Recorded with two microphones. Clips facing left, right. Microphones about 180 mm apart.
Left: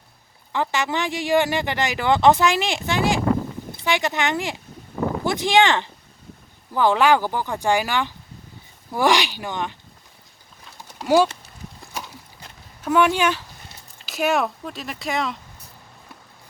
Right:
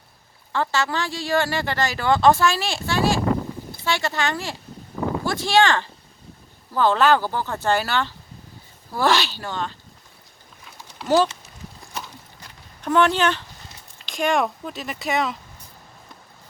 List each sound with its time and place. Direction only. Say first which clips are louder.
0.5 s speech: even; 15° left (ahead or behind)
11.0 s speech: left 2 dB; 10° left (ahead or behind)
12.8 s speech: even; 10° left (ahead or behind)